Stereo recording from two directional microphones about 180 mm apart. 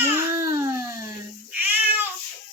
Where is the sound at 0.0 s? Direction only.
10° right (ahead or behind).